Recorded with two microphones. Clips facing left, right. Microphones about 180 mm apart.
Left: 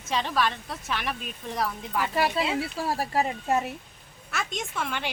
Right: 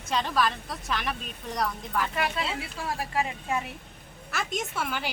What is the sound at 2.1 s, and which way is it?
Speech, 35° left (ahead or behind).